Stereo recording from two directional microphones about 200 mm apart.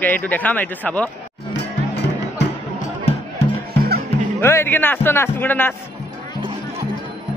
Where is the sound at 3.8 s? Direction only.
50° right (ahead or behind).